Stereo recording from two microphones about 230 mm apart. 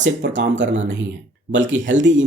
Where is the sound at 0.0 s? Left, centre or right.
Right.